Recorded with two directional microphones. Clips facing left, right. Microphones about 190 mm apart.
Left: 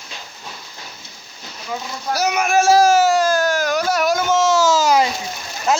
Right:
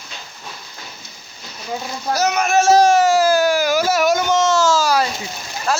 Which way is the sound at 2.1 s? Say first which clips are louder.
Right 1 dB; 10° left (ahead or behind).